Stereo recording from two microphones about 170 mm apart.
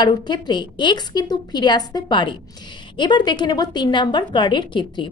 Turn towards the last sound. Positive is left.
turn(degrees=30)  # may be behind; listen again after turning